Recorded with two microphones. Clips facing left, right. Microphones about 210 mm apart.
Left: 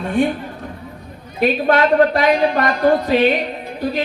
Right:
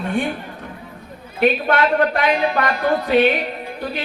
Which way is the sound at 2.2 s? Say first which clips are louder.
Left 3 dB; 45° left (ahead or behind).